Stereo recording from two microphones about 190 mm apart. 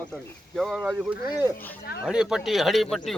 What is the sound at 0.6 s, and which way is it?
Speech, 5° right (ahead or behind).